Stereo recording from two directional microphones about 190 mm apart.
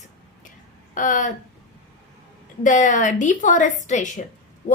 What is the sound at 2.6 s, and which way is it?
A woman's voice, 40° left (ahead or behind).